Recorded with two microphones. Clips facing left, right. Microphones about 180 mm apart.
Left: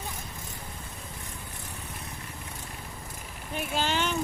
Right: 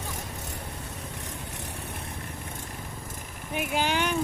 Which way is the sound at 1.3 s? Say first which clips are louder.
Right 4 dB; 75° right (ahead or behind).